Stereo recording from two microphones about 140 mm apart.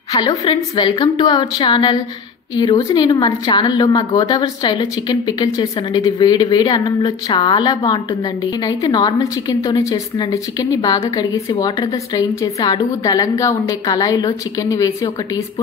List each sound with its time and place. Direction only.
0.1 s a woman's voice: 30° left (ahead or behind)